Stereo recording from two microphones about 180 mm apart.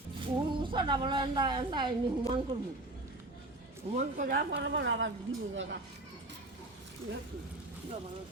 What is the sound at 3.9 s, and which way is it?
Speech, 45° right (ahead or behind).